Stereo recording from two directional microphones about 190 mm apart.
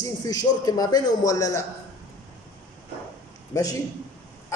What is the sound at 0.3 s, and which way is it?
A man's voice, 20° left (ahead or behind).